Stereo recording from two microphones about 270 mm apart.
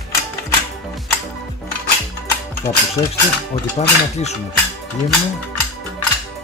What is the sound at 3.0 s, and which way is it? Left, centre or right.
Speech, centre.